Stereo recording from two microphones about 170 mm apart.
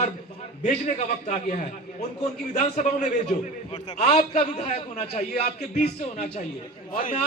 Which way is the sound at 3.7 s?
40° left (ahead or behind).